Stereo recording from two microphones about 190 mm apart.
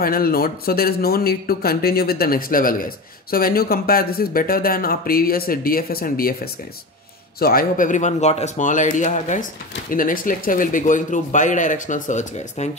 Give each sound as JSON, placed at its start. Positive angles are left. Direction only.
{"t": 0.0, "sound": "speech", "side_deg": 50}